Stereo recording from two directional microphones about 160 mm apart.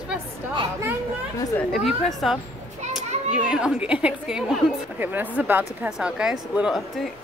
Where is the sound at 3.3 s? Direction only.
5° right (ahead or behind).